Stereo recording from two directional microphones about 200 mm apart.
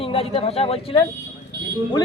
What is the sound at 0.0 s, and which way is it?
Speech, 30° left (ahead or behind).